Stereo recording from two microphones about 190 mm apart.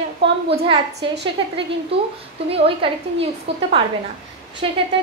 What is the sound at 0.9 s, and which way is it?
Speech, 60° right (ahead or behind).